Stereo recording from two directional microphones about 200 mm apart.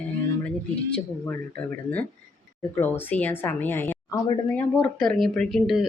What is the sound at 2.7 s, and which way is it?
A woman's voice, 10° left (ahead or behind).